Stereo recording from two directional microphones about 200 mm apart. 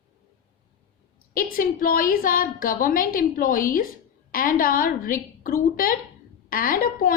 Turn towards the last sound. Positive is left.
turn(degrees=45)  # may be behind; listen again after turning